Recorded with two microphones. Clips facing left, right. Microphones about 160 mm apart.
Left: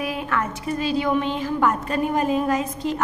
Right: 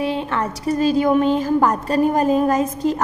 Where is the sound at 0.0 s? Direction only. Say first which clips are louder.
Right 4 dB; 30° right (ahead or behind).